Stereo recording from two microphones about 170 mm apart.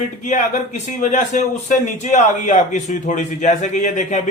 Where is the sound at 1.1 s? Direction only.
45° left (ahead or behind).